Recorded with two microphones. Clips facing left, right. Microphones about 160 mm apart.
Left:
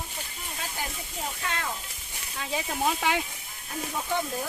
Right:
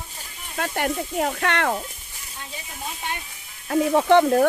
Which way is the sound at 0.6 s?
70° right (ahead or behind).